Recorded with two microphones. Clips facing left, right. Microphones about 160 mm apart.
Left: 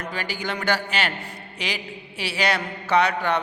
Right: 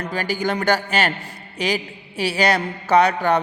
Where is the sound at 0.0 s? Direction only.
40° right (ahead or behind).